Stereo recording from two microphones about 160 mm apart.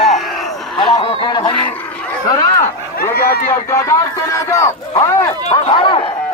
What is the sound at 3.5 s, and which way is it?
Speech, 20° left (ahead or behind).